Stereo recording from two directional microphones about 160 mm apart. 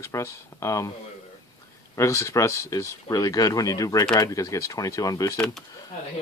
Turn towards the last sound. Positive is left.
turn(degrees=20)  # may be behind; listen again after turning